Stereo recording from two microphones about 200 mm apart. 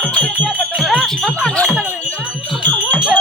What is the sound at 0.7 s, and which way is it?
Jingle bell, 5° left (ahead or behind).